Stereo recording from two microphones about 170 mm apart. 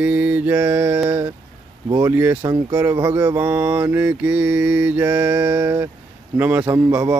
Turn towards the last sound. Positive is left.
turn(degrees=-15)  # may be behind; listen again after turning